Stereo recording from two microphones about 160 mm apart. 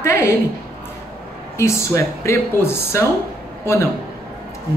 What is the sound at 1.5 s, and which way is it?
Speech, 15° left (ahead or behind).